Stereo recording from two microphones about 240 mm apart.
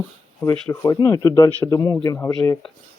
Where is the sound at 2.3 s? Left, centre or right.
Centre.